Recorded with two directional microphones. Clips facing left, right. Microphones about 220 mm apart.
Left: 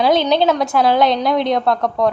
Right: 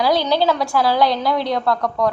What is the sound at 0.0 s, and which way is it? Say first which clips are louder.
A woman's voice: left 3 dB; 20° left (ahead or behind).